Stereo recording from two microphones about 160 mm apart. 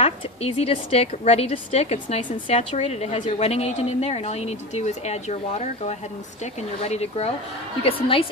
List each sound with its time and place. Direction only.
0.0 s a woman's voice: 40° left (ahead or behind)